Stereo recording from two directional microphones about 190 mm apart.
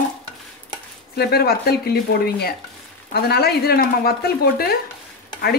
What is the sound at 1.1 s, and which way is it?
Speech, 55° left (ahead or behind).